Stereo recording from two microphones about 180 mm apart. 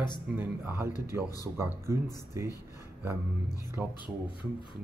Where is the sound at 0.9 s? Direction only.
20° left (ahead or behind).